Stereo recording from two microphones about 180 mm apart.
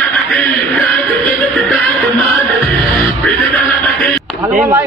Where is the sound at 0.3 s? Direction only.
Centre (ahead or behind).